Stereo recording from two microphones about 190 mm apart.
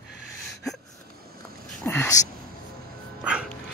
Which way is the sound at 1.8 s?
10° left (ahead or behind).